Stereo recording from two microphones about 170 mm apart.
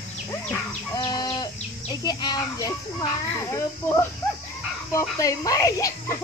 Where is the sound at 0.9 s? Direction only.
25° left (ahead or behind).